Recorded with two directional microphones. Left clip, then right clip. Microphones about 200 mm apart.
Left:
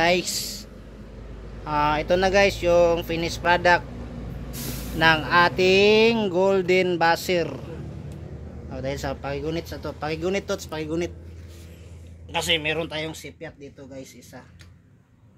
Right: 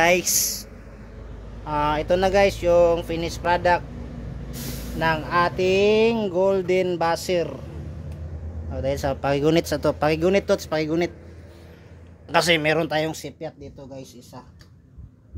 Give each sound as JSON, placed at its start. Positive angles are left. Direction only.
{"t": 0.0, "sound": "speech", "side_deg": 15}
{"t": 1.6, "sound": "speech", "side_deg": 0}
{"t": 4.9, "sound": "speech", "side_deg": 5}
{"t": 8.7, "sound": "speech", "side_deg": -10}
{"t": 9.2, "sound": "speech", "side_deg": -40}
{"t": 12.3, "sound": "speech", "side_deg": -25}